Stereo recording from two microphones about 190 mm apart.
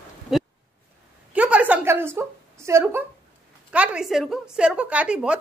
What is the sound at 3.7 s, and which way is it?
A woman's voice, 5° right (ahead or behind).